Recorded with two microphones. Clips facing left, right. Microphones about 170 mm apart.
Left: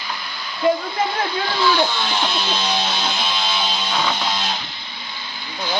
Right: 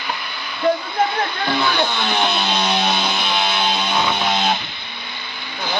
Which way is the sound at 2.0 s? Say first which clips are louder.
Right 3 dB; 60° right (ahead or behind).